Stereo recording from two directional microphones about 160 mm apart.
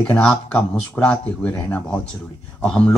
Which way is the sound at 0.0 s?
5° left (ahead or behind).